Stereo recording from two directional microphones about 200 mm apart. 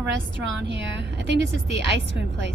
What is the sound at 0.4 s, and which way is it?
A woman's voice, 60° right (ahead or behind).